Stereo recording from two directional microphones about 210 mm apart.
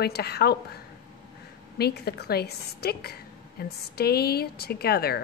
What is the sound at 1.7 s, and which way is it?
A woman's voice, 50° left (ahead or behind).